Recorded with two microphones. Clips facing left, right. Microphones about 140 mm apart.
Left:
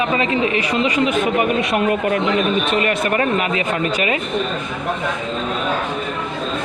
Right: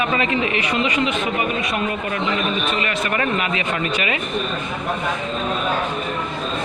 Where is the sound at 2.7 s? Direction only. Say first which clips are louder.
Left 4 dB; 50° left (ahead or behind).